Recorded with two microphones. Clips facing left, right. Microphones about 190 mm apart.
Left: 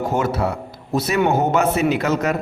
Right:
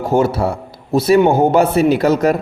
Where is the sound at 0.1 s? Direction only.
30° right (ahead or behind).